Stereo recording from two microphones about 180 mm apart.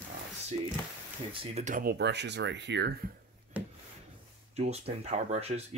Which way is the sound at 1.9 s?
70° right (ahead or behind).